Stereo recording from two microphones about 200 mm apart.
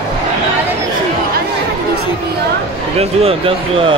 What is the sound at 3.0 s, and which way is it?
Speech, 30° right (ahead or behind).